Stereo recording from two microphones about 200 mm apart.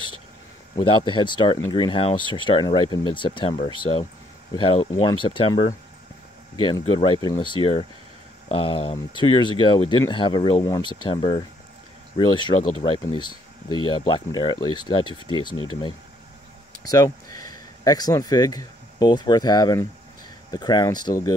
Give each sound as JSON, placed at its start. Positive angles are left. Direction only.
{"t": 0.7, "sound": "speech", "side_deg": 25}
{"t": 15.5, "sound": "speech", "side_deg": 90}
{"t": 16.8, "sound": "speech", "side_deg": 20}